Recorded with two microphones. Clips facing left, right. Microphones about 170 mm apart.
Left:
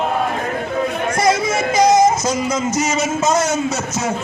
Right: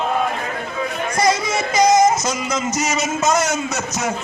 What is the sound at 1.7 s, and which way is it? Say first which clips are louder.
A man's voice: left 1 dB; 30° left (ahead or behind).